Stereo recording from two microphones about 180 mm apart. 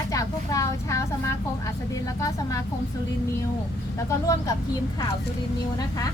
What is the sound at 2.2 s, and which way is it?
Speech, 20° left (ahead or behind).